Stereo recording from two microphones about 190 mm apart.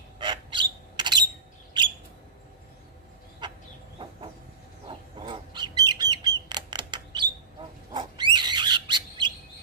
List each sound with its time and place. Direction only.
0.2 s squeak: 25° right (ahead or behind)
3.4 s chicken: 25° right (ahead or behind)
4.8 s bird flight: 25° right (ahead or behind)
7.9 s a sound: 25° right (ahead or behind)